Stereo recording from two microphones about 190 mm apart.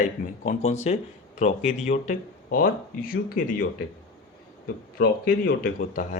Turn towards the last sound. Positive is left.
turn(degrees=45)  # may be behind; listen again after turning